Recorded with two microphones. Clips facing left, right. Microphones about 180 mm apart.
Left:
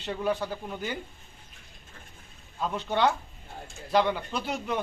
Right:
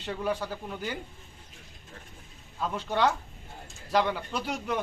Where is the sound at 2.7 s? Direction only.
5° right (ahead or behind).